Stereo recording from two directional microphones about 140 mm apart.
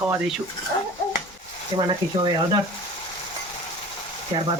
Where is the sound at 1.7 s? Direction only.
30° right (ahead or behind).